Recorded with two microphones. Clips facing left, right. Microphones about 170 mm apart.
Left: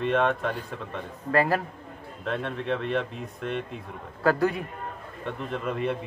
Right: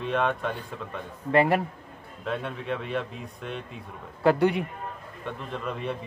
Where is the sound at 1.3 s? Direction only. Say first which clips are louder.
Right 2 dB; 25° right (ahead or behind).